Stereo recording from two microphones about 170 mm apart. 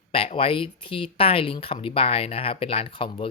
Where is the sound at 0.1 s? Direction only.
35° left (ahead or behind).